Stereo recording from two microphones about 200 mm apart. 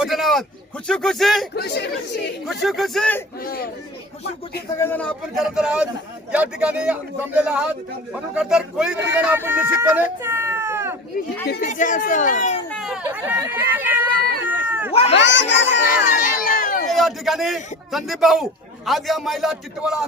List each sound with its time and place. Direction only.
0.0 s a man's voice: centre (ahead or behind)
1.5 s speech: 55° left (ahead or behind)
2.5 s a man's voice: centre (ahead or behind)
3.4 s speech: 50° left (ahead or behind)
4.7 s a man's voice: 10° left (ahead or behind); by 9.7 s 10° right (ahead or behind)
9.9 s a sound: 10° right (ahead or behind)
11.4 s speech: 45° left (ahead or behind)
12.7 s speech: centre (ahead or behind)
14.5 s cat: 10° right (ahead or behind)
15.1 s speech: 65° left (ahead or behind)
15.9 s speech: 45° left (ahead or behind)
16.9 s a man's voice: centre (ahead or behind)